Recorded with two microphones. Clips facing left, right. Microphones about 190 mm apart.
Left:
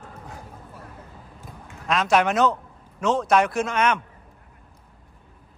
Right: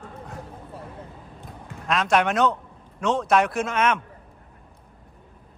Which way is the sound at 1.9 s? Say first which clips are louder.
Left 1 dB; centre (ahead or behind).